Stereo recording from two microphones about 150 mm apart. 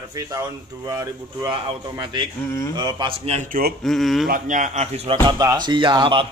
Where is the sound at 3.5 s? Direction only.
75° right (ahead or behind).